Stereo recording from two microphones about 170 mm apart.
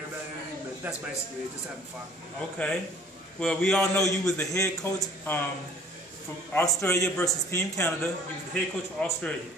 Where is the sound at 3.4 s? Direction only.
5° left (ahead or behind).